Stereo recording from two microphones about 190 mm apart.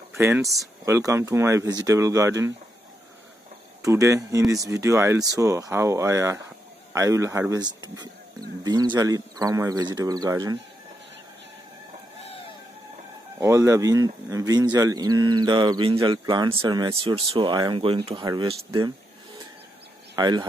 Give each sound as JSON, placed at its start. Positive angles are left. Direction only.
{"t": 0.2, "sound": "speech", "side_deg": -15}
{"t": 3.8, "sound": "speech", "side_deg": -15}
{"t": 13.4, "sound": "speech", "side_deg": -15}
{"t": 20.2, "sound": "speech", "side_deg": -20}